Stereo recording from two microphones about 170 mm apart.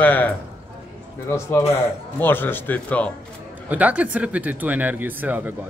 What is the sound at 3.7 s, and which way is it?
Speech, 10° right (ahead or behind).